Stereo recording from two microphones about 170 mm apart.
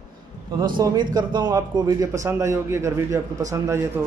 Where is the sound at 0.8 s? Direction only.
20° right (ahead or behind).